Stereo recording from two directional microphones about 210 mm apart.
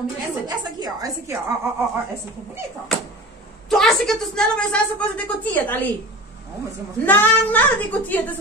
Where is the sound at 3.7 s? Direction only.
Centre (ahead or behind).